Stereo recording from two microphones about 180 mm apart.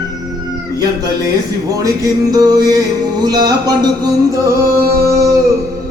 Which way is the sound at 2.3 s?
20° right (ahead or behind).